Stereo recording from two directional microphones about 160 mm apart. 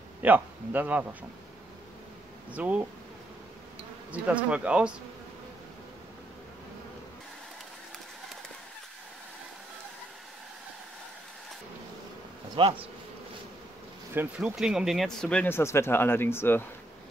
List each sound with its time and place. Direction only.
0.2 s speech: 10° right (ahead or behind)
2.5 s speech: 10° right (ahead or behind)
4.1 s speech: 10° right (ahead or behind)
12.5 s speech: 35° right (ahead or behind)
14.1 s speech: 5° right (ahead or behind); by 16.6 s 15° left (ahead or behind)